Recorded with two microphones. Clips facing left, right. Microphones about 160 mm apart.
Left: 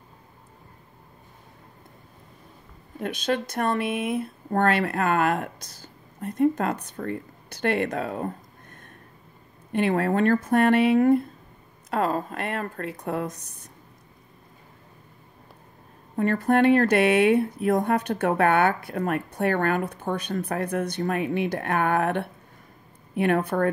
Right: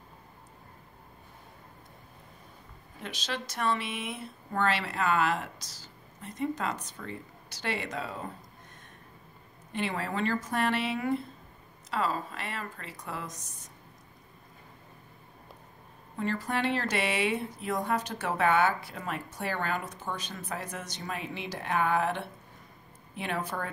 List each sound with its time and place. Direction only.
3.0 s speech: 55° left (ahead or behind)
16.2 s speech: 55° left (ahead or behind)